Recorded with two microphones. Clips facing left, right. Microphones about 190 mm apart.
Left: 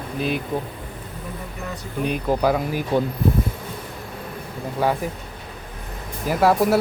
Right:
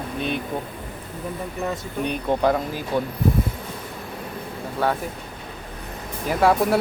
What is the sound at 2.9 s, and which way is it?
Speech, 20° left (ahead or behind).